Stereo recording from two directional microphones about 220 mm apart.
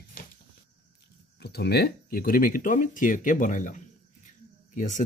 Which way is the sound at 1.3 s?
50° left (ahead or behind).